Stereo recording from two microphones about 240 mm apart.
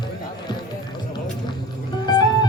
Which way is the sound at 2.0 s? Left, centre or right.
Centre.